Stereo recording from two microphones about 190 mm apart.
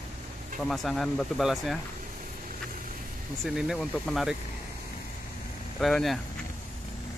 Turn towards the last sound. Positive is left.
turn(degrees=0)  # may be behind; listen again after turning